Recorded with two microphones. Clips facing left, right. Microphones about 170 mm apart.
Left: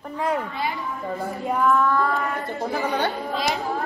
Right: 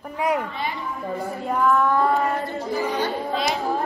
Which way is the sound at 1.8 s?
15° right (ahead or behind).